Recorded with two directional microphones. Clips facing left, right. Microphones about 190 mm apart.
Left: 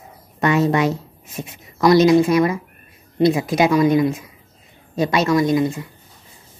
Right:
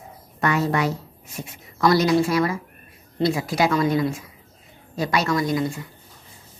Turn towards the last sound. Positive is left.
turn(degrees=20)  # may be behind; listen again after turning